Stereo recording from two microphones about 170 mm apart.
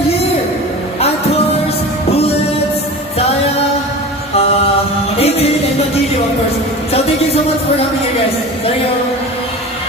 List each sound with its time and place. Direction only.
5.2 s music: 35° left (ahead or behind)